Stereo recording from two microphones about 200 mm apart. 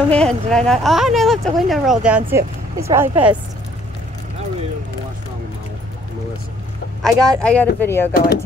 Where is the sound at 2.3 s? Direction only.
15° right (ahead or behind).